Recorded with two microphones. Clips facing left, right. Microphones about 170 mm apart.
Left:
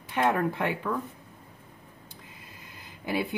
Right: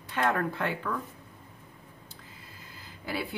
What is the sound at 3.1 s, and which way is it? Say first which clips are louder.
Speech: left 5 dB; 20° left (ahead or behind).